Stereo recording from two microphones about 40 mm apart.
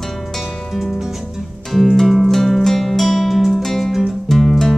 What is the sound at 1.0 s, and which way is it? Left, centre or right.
Music, centre.